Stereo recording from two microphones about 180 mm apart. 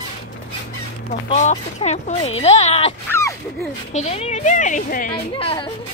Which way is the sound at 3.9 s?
35° left (ahead or behind).